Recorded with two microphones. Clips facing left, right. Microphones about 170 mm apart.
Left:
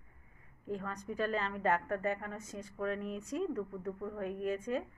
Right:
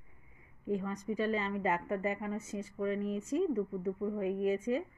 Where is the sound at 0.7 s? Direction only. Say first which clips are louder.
Right 4 dB; 5° right (ahead or behind).